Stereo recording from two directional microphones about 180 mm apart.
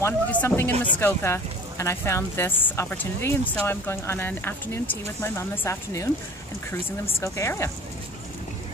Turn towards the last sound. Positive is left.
turn(degrees=15)  # may be behind; listen again after turning